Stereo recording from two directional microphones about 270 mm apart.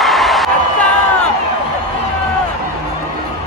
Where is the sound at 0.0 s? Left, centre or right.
Centre.